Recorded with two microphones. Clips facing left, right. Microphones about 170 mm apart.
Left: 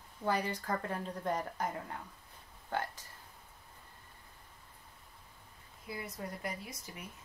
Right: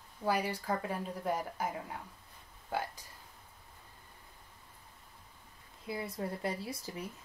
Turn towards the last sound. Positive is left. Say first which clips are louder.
# right 6 dB
turn(degrees=-30)  # may be behind; listen again after turning